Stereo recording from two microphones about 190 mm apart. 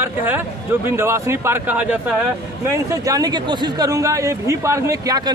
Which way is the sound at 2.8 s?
20° right (ahead or behind).